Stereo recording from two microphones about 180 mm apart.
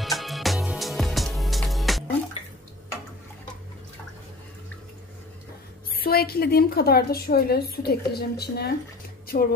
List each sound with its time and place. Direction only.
0.0 s music: centre (ahead or behind)
5.9 s a woman's voice: 55° left (ahead or behind)